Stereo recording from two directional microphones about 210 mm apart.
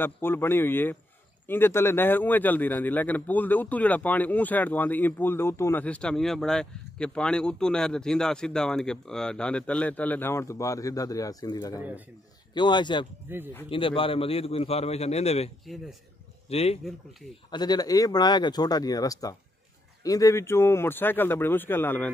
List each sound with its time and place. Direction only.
0.0 s a man's voice: 10° left (ahead or behind)
13.3 s speech: 10° right (ahead or behind)
13.7 s a man's voice: 25° left (ahead or behind); by 22.1 s 10° left (ahead or behind)